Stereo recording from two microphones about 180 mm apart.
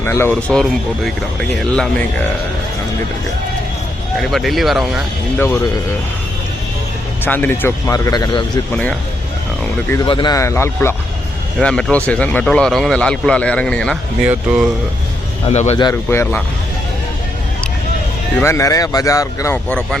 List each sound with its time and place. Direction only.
0.0 s speech: 15° left (ahead or behind)
4.2 s speech: centre (ahead or behind)
7.3 s speech: 10° left (ahead or behind)
8.7 s speech: 5° left (ahead or behind)
10.1 s speech: 25° left (ahead or behind); by 14.7 s 5° right (ahead or behind)
15.4 s a man's voice: 35° left (ahead or behind)
15.8 s speech: 15° left (ahead or behind)
18.3 s speech: 15° left (ahead or behind)